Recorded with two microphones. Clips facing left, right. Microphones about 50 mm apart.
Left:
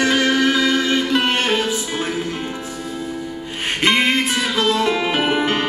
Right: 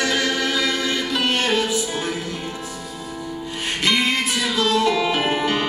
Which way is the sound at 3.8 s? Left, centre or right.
Left.